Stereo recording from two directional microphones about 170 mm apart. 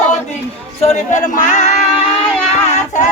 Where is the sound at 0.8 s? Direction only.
40° left (ahead or behind).